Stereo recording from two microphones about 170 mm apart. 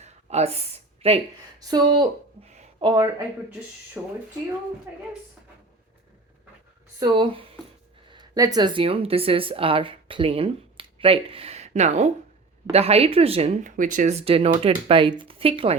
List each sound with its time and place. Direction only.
0.0 s a sound: 40° right (ahead or behind)
1.6 s speech: 25° right (ahead or behind)
2.4 s a sound: 40° right (ahead or behind)
2.8 s speech: 25° right (ahead or behind)
4.0 s speech: 10° right (ahead or behind)
7.0 s speech: 30° right (ahead or behind)
13.7 s speech: 50° right (ahead or behind); by 15.7 s 35° right (ahead or behind)